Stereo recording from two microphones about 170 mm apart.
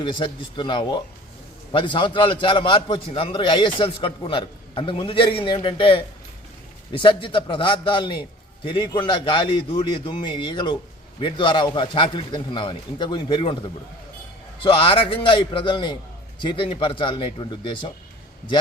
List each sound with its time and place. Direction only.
0.0 s a man's voice: 30° left (ahead or behind)
14.6 s a man's voice: 30° left (ahead or behind)